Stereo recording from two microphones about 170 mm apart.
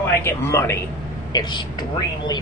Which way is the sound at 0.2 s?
15° left (ahead or behind).